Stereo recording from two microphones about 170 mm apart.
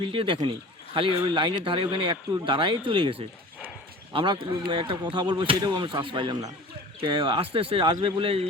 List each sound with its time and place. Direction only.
0.0 s a man's voice: 30° right (ahead or behind)